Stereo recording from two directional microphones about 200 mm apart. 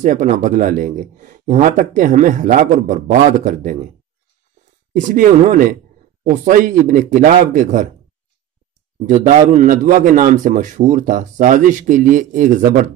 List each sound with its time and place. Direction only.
0.0 s speech: 40° right (ahead or behind)
4.9 s speech: 40° right (ahead or behind)
9.0 s speech: 40° right (ahead or behind)